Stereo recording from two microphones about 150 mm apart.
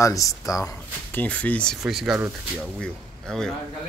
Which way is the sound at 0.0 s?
20° left (ahead or behind).